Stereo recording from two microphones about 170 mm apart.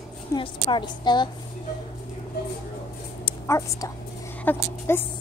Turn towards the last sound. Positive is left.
turn(degrees=15)  # may be behind; listen again after turning